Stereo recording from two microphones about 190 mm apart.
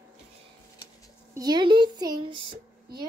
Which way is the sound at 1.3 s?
20° right (ahead or behind).